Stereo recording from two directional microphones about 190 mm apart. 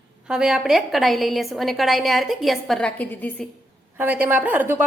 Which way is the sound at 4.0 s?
10° right (ahead or behind).